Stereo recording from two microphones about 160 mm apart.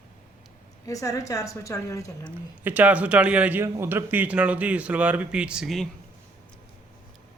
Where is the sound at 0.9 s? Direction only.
20° left (ahead or behind).